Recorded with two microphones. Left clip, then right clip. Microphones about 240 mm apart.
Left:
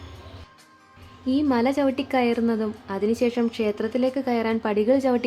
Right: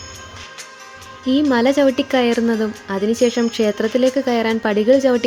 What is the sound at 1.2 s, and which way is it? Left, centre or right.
A woman's voice, centre.